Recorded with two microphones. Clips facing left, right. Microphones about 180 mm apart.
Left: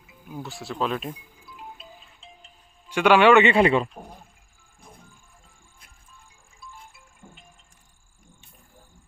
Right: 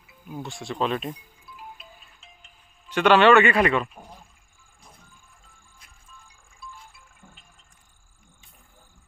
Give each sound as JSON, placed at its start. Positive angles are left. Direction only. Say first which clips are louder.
{"t": 0.4, "sound": "speech", "louder": "right 1 dB", "side_deg": 5}
{"t": 1.5, "sound": "music", "louder": "left 2 dB", "side_deg": 25}
{"t": 2.9, "sound": "a man's voice", "louder": "even", "side_deg": 10}